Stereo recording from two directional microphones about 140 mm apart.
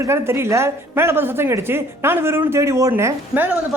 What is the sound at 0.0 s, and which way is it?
A woman's voice, 20° right (ahead or behind).